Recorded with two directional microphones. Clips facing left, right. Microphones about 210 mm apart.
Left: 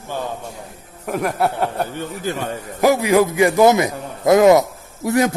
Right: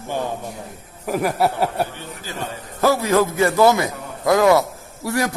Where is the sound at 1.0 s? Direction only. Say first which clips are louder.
Even; centre (ahead or behind).